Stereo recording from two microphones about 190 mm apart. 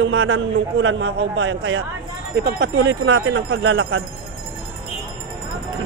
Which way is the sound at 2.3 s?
65° right (ahead or behind).